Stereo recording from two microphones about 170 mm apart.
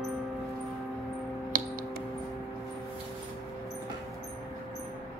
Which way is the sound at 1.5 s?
50° right (ahead or behind).